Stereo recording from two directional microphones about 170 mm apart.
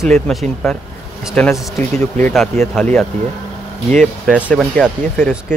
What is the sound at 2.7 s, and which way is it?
Speech, 5° left (ahead or behind).